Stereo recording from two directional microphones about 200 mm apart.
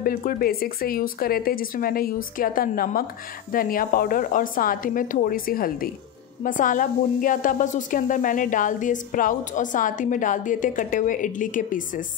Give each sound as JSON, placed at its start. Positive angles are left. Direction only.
{"t": 0.0, "sound": "a woman's voice", "side_deg": 45}